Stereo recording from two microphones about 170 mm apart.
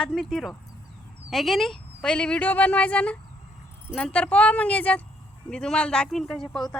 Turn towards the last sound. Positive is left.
turn(degrees=0)  # may be behind; listen again after turning